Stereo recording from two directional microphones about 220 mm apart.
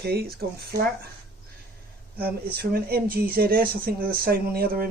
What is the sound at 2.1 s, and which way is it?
Speech, 45° right (ahead or behind).